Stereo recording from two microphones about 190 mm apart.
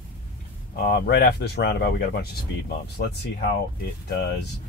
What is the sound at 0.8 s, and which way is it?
Speech, 55° left (ahead or behind).